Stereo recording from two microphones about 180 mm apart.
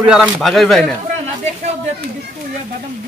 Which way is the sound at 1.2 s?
40° right (ahead or behind).